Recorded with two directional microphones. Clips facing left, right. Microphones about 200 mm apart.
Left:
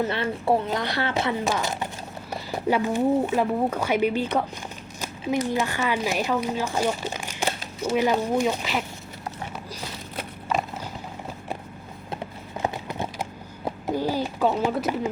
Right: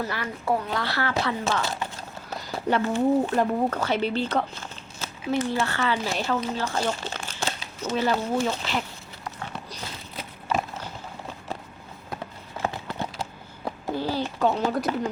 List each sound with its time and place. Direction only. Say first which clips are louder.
0.0 s speech: left 5 dB; 25° left (ahead or behind); by 8.8 s 10° left (ahead or behind)
12.5 s clip-clop: left 2 dB; 20° left (ahead or behind)
13.7 s a sound: left 2 dB; 15° left (ahead or behind)